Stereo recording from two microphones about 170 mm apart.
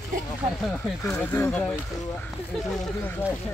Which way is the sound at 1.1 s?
15° left (ahead or behind).